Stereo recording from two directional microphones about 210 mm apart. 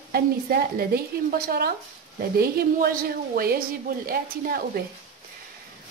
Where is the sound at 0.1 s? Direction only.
45° right (ahead or behind).